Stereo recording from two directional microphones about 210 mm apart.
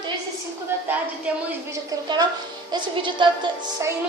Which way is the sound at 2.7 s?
20° right (ahead or behind).